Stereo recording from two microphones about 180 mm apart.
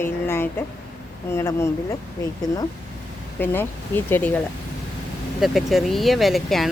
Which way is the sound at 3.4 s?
10° left (ahead or behind).